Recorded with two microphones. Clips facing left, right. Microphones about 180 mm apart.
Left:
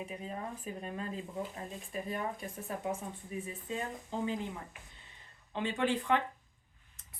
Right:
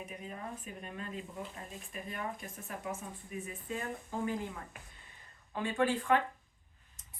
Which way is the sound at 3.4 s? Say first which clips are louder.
Left 1 dB; 25° left (ahead or behind).